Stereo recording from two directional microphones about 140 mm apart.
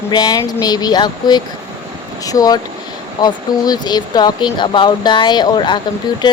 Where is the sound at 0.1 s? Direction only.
25° left (ahead or behind).